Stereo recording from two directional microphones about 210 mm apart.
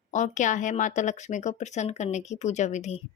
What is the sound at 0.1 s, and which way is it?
Speech, 35° left (ahead or behind).